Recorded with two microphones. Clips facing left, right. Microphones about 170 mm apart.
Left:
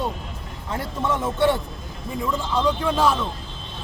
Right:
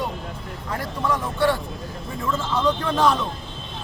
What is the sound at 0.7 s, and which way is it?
Speech, 25° left (ahead or behind).